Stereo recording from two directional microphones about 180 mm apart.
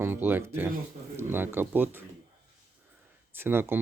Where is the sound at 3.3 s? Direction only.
10° right (ahead or behind).